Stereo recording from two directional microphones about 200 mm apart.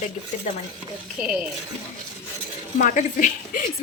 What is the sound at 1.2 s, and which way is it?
Speech, 5° right (ahead or behind).